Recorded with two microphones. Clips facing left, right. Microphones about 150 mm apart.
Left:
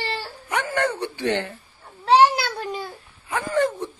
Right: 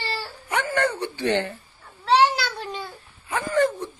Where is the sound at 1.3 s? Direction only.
Centre (ahead or behind).